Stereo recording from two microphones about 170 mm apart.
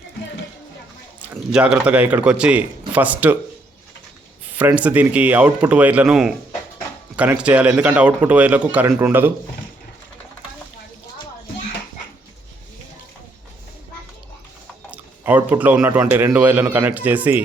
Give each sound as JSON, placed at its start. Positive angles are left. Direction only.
{"t": 1.2, "sound": "a man's voice", "side_deg": -10}
{"t": 4.5, "sound": "a man's voice", "side_deg": -10}
{"t": 14.8, "sound": "a man's voice", "side_deg": -10}